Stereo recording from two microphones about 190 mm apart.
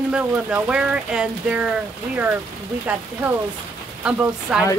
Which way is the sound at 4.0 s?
5° right (ahead or behind).